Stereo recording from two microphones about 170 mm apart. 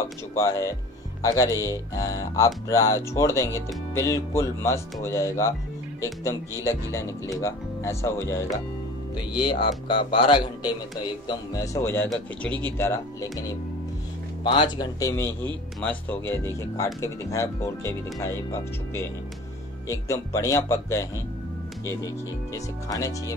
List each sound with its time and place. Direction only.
0.4 s a man's voice: 20° left (ahead or behind)